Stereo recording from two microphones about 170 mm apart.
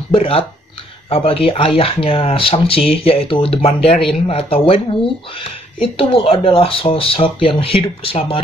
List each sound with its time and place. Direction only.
0.1 s speech: 35° left (ahead or behind)